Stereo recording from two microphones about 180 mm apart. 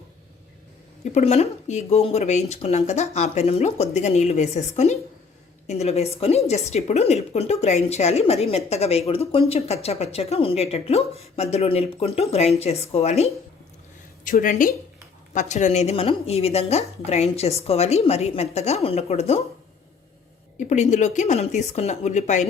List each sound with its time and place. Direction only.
1.0 s a woman's voice: 40° left (ahead or behind)
14.3 s a woman's voice: 50° left (ahead or behind)
20.6 s a woman's voice: 40° left (ahead or behind)